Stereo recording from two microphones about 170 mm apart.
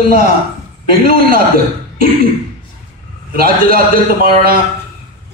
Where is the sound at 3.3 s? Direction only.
60° right (ahead or behind).